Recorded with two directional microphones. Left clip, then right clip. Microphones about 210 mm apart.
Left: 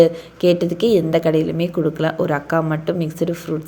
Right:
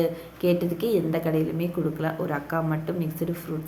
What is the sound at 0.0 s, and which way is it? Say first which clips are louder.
A woman's voice: left 11 dB; 30° left (ahead or behind).